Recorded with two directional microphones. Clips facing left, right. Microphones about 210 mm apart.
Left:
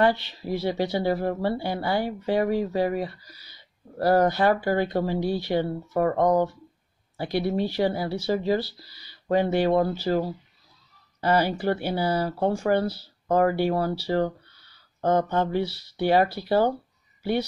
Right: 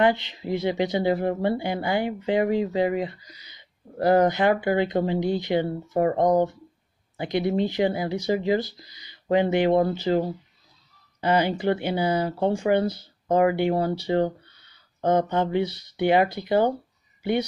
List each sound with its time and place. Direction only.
0.0 s speech: 20° right (ahead or behind)